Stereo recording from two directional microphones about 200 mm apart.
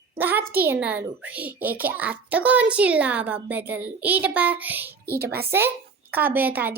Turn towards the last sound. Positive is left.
turn(degrees=-10)  # may be behind; listen again after turning